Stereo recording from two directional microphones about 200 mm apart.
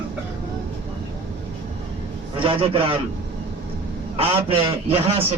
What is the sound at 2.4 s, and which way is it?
Speech, 25° right (ahead or behind).